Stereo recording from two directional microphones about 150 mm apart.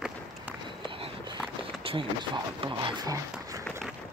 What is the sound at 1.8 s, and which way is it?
Speech, 35° right (ahead or behind).